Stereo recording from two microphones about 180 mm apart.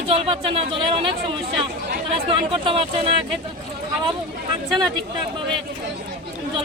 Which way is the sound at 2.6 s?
30° right (ahead or behind).